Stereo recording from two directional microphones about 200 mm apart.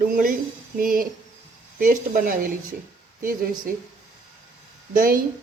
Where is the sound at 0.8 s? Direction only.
45° right (ahead or behind).